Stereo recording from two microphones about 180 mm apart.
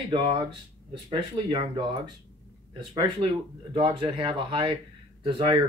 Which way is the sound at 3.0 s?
30° right (ahead or behind).